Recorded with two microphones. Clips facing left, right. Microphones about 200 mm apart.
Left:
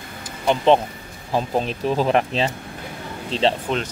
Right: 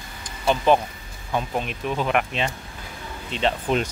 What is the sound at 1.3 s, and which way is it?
Speech, 35° left (ahead or behind).